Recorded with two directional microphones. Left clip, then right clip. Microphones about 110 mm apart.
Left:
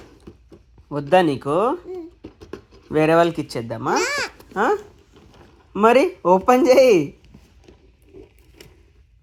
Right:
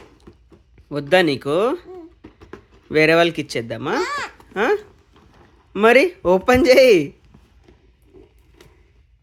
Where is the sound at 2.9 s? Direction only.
35° right (ahead or behind).